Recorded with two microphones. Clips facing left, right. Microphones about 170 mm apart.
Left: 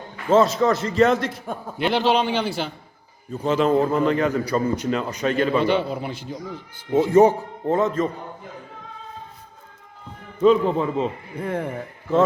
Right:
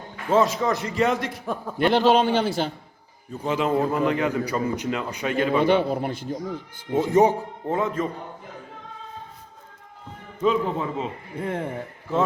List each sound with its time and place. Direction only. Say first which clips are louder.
0.3 s a man's voice: left 3 dB; 15° right (ahead or behind)
1.5 s a man's voice: right 4 dB; 45° right (ahead or behind)
3.4 s a man's voice: left 4 dB; 15° right (ahead or behind)
5.5 s a man's voice: right 1 dB; 55° right (ahead or behind)
7.1 s a man's voice: left 3 dB; 15° right (ahead or behind)
10.4 s a man's voice: left 6 dB; 5° right (ahead or behind)
11.3 s speech: left 1 dB; 25° right (ahead or behind)